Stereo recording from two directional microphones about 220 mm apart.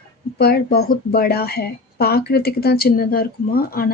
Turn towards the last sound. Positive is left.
turn(degrees=40)  # may be behind; listen again after turning